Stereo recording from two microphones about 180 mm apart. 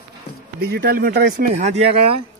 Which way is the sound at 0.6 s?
60° right (ahead or behind).